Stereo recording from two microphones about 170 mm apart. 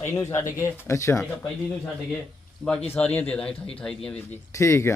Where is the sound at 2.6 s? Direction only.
5° left (ahead or behind).